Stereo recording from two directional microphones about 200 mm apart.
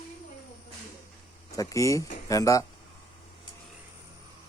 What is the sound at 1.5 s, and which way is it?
Speech, 15° left (ahead or behind).